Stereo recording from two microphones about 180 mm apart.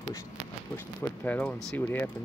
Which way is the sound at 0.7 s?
10° left (ahead or behind).